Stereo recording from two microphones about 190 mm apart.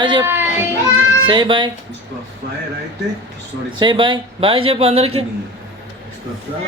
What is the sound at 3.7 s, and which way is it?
A man's voice, 25° right (ahead or behind).